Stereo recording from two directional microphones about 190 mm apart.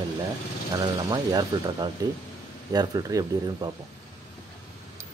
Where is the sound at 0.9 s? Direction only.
20° right (ahead or behind).